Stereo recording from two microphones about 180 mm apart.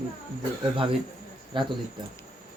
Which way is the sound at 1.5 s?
25° right (ahead or behind).